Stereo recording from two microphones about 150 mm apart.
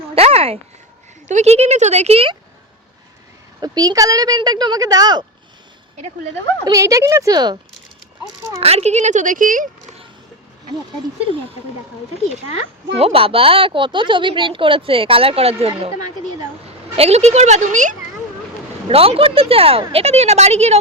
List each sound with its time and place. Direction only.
0.1 s a sound: 40° right (ahead or behind)
1.3 s a woman's voice: 50° right (ahead or behind)
3.6 s speech: 25° right (ahead or behind)
6.7 s speech: 20° right (ahead or behind)
8.6 s a woman's voice: 45° right (ahead or behind); by 9.6 s 60° right (ahead or behind)
13.0 s a woman's voice: 40° right (ahead or behind)
16.9 s a woman's voice: 45° right (ahead or behind)
18.9 s a woman's voice: 40° right (ahead or behind)